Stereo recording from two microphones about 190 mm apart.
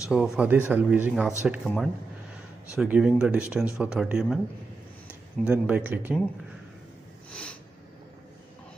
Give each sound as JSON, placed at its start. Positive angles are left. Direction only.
{"t": 0.1, "sound": "speech", "side_deg": -5}
{"t": 5.5, "sound": "speech", "side_deg": -5}
{"t": 7.2, "sound": "snort", "side_deg": 5}